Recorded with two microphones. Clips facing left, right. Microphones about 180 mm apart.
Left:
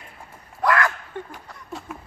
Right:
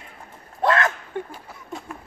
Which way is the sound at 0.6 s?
25° right (ahead or behind).